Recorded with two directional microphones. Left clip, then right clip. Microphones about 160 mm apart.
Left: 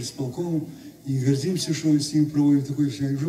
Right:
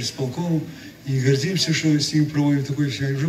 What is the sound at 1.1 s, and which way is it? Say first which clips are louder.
A man's voice: right 3 dB; 55° left (ahead or behind).